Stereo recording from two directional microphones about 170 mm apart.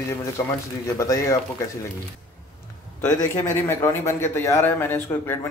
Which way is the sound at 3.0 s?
15° left (ahead or behind).